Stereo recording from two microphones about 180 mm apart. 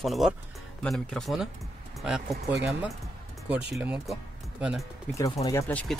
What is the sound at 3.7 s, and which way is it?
Speech, 5° right (ahead or behind).